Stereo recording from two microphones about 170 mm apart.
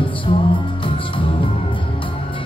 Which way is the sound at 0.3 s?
30° left (ahead or behind).